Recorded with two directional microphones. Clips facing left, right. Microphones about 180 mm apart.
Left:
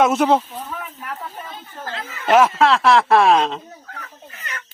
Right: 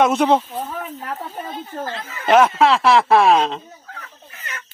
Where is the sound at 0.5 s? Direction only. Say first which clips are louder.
Right 4 dB; 40° right (ahead or behind).